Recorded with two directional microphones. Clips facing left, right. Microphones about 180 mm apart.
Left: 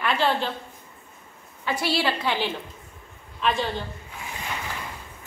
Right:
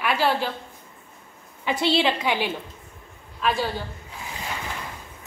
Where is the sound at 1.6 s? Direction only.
20° right (ahead or behind); by 3.7 s 5° right (ahead or behind).